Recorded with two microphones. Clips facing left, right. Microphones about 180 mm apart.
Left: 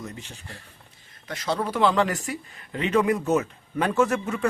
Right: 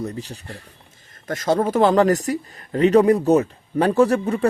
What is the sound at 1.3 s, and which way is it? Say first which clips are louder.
Speech: right 8 dB; 45° right (ahead or behind).